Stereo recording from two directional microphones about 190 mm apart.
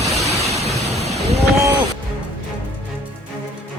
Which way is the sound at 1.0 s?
35° right (ahead or behind).